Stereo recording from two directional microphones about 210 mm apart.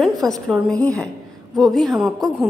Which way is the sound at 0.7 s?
15° right (ahead or behind).